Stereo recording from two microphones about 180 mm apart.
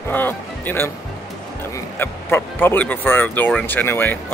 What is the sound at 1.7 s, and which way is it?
Speech, 10° left (ahead or behind).